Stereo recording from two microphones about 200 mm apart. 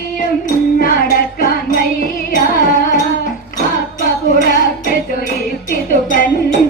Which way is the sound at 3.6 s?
40° left (ahead or behind).